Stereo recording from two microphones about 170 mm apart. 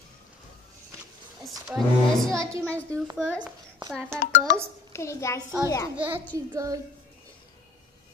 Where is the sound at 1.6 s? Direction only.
Centre (ahead or behind).